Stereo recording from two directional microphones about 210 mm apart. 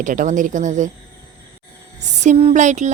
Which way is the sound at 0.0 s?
35° right (ahead or behind).